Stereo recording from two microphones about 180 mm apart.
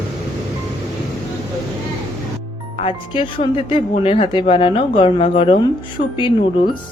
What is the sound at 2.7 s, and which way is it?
Speech, 30° left (ahead or behind).